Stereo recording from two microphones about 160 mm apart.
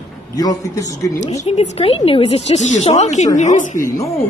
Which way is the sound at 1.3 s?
45° left (ahead or behind).